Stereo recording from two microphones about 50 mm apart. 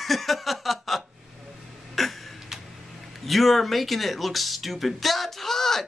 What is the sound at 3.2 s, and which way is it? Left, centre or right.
Speech, centre.